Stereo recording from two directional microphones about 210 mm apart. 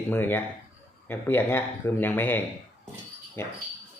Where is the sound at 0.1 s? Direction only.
10° left (ahead or behind).